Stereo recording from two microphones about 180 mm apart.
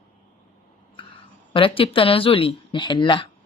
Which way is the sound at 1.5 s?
30° left (ahead or behind).